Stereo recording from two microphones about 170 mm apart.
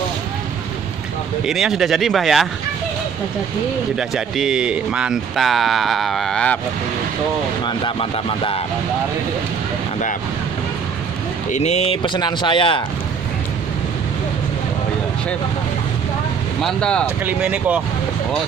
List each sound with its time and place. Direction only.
1.4 s speech: centre (ahead or behind)
3.9 s speech: centre (ahead or behind)
7.6 s speech: 30° left (ahead or behind)
11.5 s speech: 40° left (ahead or behind)
16.6 s speech: 5° left (ahead or behind)
17.2 s speech: 10° right (ahead or behind)